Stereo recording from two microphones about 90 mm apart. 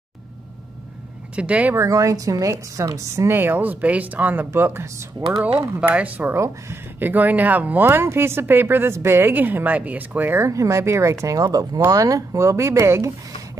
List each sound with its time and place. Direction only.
1.3 s speech: 15° right (ahead or behind)
1.8 s a woman's voice: 35° right (ahead or behind)
3.3 s speech: 25° right (ahead or behind)
6.3 s a woman's voice: 30° right (ahead or behind)